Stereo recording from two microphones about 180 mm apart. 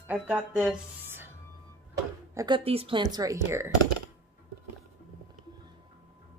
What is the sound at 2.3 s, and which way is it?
Speech, 20° right (ahead or behind).